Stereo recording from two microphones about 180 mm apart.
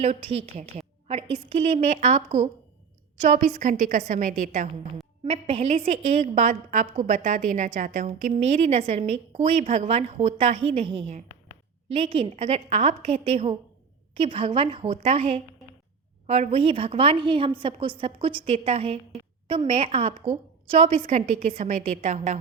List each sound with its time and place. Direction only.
0.0 s a woman's voice: 35° right (ahead or behind)
5.2 s a woman's voice: 30° right (ahead or behind)